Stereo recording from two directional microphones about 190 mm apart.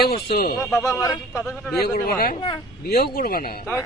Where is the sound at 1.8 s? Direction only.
55° left (ahead or behind).